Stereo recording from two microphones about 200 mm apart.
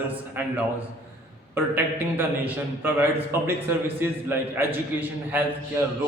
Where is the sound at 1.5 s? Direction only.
10° right (ahead or behind).